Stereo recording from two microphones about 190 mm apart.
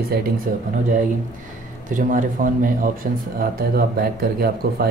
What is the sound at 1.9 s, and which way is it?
Speech, 45° right (ahead or behind).